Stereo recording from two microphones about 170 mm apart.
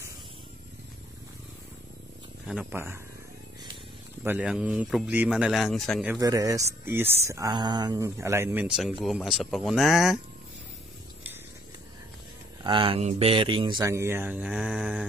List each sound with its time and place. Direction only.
2.4 s speech: 5° right (ahead or behind)
4.2 s speech: 10° right (ahead or behind)
6.0 s speech: 20° right (ahead or behind)
8.6 s speech: centre (ahead or behind)
12.6 s speech: 30° right (ahead or behind); by 15.0 s 5° right (ahead or behind)